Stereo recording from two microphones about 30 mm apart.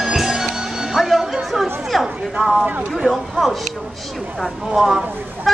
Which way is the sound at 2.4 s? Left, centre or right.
Centre.